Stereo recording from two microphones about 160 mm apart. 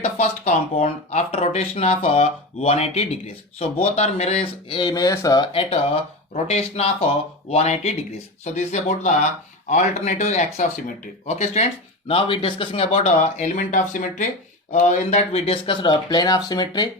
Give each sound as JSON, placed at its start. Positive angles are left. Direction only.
{"t": 0.0, "sound": "speech", "side_deg": 45}
{"t": 4.8, "sound": "speech", "side_deg": 25}
{"t": 6.3, "sound": "speech", "side_deg": 40}